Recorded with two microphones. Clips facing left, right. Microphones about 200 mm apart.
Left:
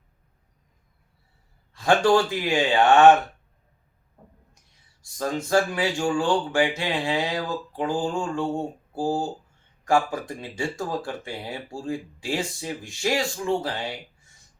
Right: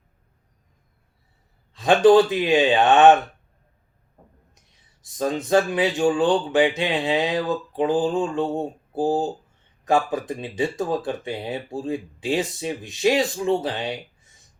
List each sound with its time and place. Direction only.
1.7 s speech: 20° right (ahead or behind)
5.0 s speech: 20° right (ahead or behind)